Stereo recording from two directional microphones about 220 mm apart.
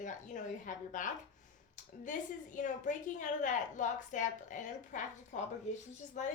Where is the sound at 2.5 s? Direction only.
35° left (ahead or behind).